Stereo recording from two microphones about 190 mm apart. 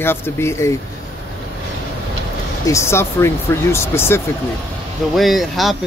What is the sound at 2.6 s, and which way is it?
Speech, 15° left (ahead or behind).